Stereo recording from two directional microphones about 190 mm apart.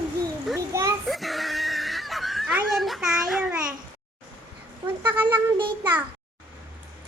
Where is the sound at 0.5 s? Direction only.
15° right (ahead or behind).